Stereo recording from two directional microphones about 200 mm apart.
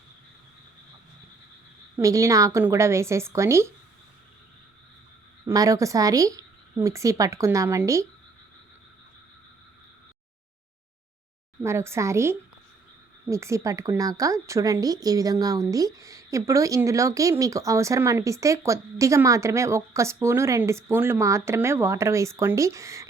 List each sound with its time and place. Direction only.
2.0 s a woman's voice: 15° right (ahead or behind)
5.5 s a woman's voice: 15° right (ahead or behind)
11.6 s a woman's voice: 15° right (ahead or behind)